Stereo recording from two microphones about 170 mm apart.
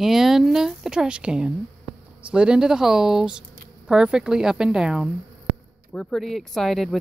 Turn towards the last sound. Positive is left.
turn(degrees=0)  # may be behind; listen again after turning